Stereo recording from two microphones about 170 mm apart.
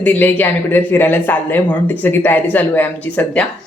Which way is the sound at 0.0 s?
10° left (ahead or behind).